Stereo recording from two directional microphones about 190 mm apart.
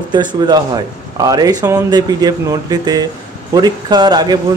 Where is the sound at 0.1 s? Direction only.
25° right (ahead or behind).